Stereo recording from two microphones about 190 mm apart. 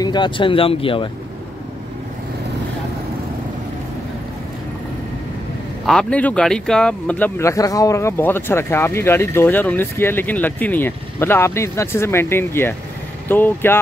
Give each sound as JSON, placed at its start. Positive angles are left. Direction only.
{"t": 0.0, "sound": "speech", "side_deg": 25}
{"t": 5.9, "sound": "speech", "side_deg": 5}